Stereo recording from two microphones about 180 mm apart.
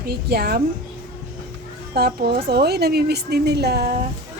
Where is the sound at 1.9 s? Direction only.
60° right (ahead or behind).